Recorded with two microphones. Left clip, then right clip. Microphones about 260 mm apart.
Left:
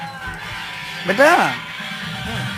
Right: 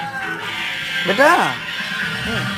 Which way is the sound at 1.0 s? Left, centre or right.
Centre.